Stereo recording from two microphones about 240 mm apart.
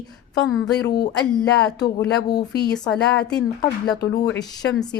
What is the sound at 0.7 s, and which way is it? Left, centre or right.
Speech, left.